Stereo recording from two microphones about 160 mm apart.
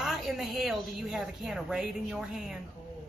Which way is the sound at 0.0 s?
Centre (ahead or behind).